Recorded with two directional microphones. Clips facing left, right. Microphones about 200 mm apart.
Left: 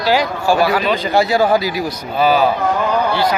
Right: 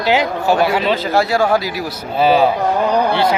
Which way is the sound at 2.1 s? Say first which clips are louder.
Right 1 dB; 25° right (ahead or behind).